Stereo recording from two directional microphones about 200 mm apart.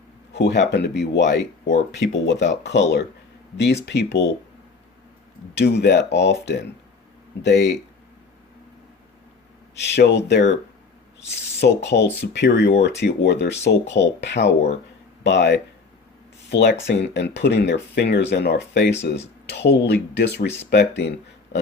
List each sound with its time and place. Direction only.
0.3 s speech: 60° left (ahead or behind)
5.5 s speech: 60° left (ahead or behind)
9.8 s speech: 60° left (ahead or behind)
11.6 s speech: 60° left (ahead or behind)